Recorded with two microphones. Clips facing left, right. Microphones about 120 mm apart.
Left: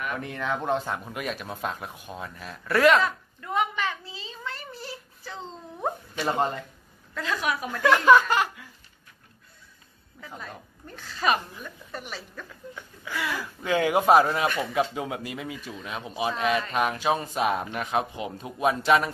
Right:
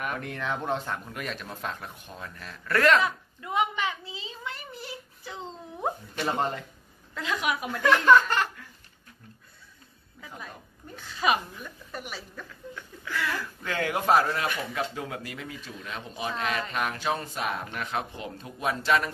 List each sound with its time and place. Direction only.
0.2 s speech: 5° left (ahead or behind)
3.0 s a sound: 15° right (ahead or behind)
6.2 s speech: centre (ahead or behind)
7.2 s speech: 15° right (ahead or behind)
7.7 s speech: 5° left (ahead or behind)
11.0 s speech: 15° right (ahead or behind)
12.7 s speech: 15° left (ahead or behind)